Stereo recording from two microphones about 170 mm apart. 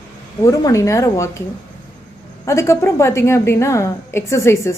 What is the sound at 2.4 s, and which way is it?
A woman's voice, 15° left (ahead or behind).